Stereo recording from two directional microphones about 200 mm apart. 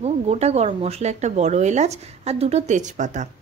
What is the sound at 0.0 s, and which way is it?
A woman's voice, 30° right (ahead or behind).